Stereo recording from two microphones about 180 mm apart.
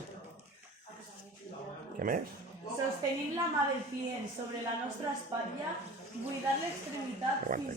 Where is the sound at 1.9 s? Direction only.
50° right (ahead or behind).